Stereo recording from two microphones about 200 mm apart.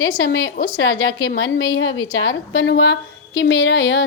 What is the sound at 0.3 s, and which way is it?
A woman's voice, 70° left (ahead or behind).